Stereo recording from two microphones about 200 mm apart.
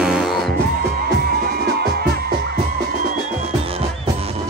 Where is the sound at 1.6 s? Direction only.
50° right (ahead or behind).